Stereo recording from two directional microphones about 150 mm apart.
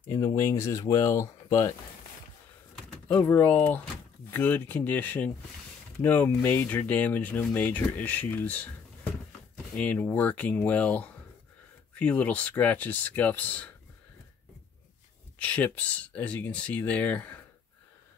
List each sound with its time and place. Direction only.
0.1 s speech: 20° left (ahead or behind)
3.1 s speech: 15° left (ahead or behind)
9.8 s speech: 10° left (ahead or behind)
15.3 s speech: 10° left (ahead or behind)